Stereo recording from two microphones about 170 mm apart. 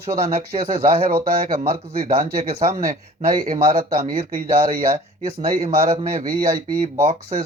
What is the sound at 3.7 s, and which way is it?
Speech, 55° right (ahead or behind).